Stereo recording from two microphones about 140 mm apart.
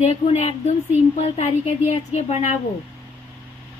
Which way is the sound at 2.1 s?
55° left (ahead or behind).